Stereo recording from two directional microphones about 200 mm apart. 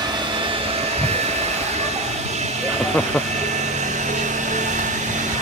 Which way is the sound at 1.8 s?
35° right (ahead or behind).